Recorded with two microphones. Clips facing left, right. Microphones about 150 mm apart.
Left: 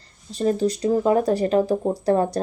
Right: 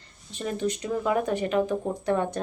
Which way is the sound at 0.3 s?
35° left (ahead or behind).